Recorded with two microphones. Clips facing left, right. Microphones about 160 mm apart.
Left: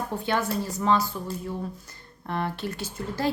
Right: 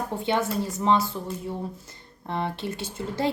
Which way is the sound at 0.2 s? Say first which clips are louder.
Right 2 dB; 25° right (ahead or behind).